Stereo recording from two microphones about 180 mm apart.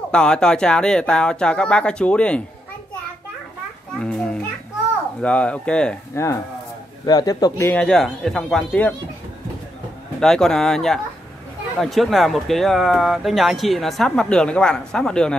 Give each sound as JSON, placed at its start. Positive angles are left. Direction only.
{"t": 0.1, "sound": "speech", "side_deg": 5}
{"t": 4.0, "sound": "children playing", "side_deg": 5}
{"t": 5.2, "sound": "speech", "side_deg": 5}
{"t": 6.1, "sound": "speech", "side_deg": 15}
{"t": 10.2, "sound": "speech", "side_deg": 5}